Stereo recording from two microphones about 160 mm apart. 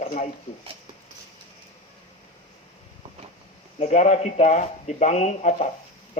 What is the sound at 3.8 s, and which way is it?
Speech, 45° left (ahead or behind).